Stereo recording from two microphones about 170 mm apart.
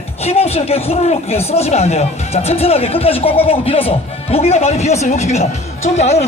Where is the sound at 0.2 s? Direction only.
35° left (ahead or behind).